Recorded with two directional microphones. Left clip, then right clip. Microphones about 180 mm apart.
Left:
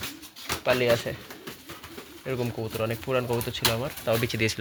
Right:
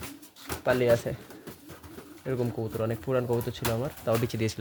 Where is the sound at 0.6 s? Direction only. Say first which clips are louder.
Left 1 dB; 35° right (ahead or behind).